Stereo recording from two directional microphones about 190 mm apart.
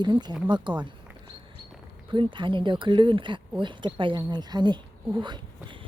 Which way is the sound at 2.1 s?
25° right (ahead or behind).